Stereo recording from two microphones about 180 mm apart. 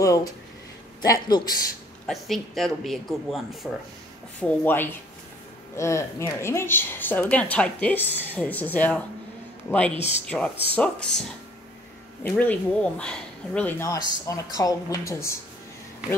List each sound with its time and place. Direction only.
0.0 s a man's voice: 20° left (ahead or behind)
2.0 s speech: centre (ahead or behind)
4.4 s speech: 10° left (ahead or behind)
12.2 s speech: 10° left (ahead or behind)